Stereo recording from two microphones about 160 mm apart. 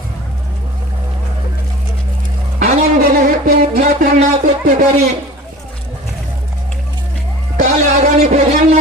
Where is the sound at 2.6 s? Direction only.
45° right (ahead or behind).